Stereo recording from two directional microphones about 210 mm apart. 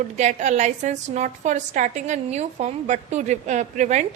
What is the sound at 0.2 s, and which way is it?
A woman's voice, 35° right (ahead or behind).